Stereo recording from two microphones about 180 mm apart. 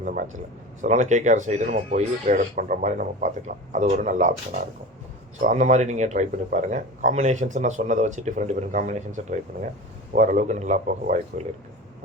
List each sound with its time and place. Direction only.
0.8 s speech: 40° right (ahead or behind)
5.4 s speech: 45° right (ahead or behind)